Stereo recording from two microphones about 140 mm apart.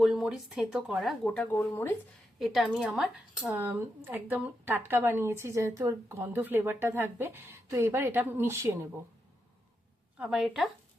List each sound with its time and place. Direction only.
0.0 s speech: 5° right (ahead or behind)
1.5 s speech: 20° left (ahead or behind)
2.4 s speech: centre (ahead or behind); by 8.9 s 20° right (ahead or behind)
10.2 s speech: 5° right (ahead or behind)